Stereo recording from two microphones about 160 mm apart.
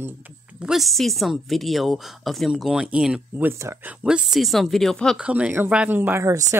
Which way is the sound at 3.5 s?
15° right (ahead or behind).